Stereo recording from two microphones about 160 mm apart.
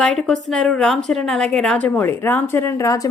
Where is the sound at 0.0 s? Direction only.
5° left (ahead or behind).